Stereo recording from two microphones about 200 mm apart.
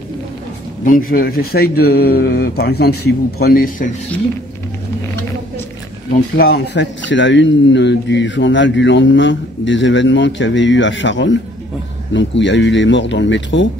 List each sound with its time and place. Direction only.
0.8 s speech: 45° left (ahead or behind)
6.3 s speech: 50° left (ahead or behind)